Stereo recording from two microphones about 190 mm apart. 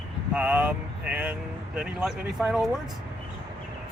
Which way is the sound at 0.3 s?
5° right (ahead or behind).